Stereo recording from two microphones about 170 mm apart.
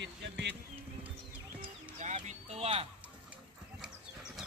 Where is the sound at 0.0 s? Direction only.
90° right.